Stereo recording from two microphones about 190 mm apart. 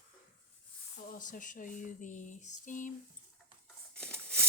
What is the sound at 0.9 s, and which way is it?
Speech, 45° left (ahead or behind).